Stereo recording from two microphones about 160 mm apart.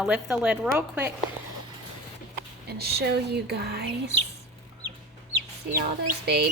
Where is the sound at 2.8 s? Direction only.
85° right.